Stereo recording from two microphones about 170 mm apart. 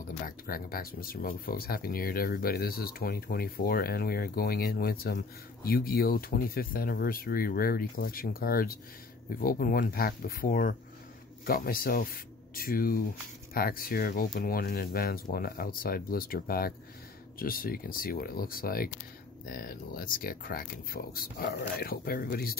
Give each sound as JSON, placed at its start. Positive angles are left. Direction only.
{"t": 0.2, "sound": "speech", "side_deg": 60}